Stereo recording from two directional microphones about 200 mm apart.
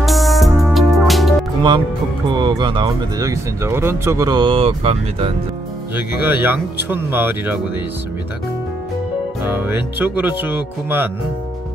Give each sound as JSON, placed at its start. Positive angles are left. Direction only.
{"t": 0.0, "sound": "music", "side_deg": 0}
{"t": 2.3, "sound": "speech", "side_deg": -25}
{"t": 5.9, "sound": "speech", "side_deg": -10}
{"t": 9.4, "sound": "speech", "side_deg": -10}